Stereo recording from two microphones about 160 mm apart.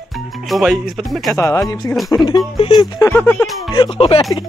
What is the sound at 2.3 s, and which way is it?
Speech, 30° left (ahead or behind).